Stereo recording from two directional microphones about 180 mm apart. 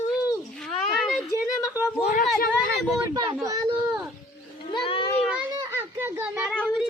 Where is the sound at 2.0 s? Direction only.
40° left (ahead or behind).